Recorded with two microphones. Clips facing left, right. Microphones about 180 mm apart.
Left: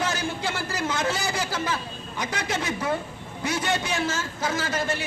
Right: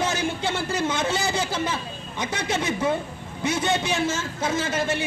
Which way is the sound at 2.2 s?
25° right (ahead or behind).